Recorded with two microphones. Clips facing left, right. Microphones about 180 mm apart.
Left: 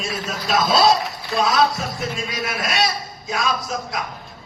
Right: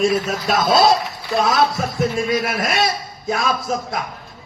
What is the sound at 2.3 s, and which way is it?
Speech, 55° right (ahead or behind).